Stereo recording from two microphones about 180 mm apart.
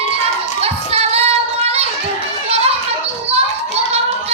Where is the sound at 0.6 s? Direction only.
35° right (ahead or behind).